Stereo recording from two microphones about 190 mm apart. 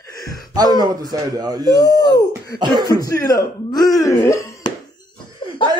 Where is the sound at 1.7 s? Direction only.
20° left (ahead or behind).